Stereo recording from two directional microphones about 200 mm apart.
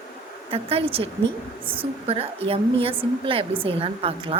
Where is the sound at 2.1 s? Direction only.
30° right (ahead or behind).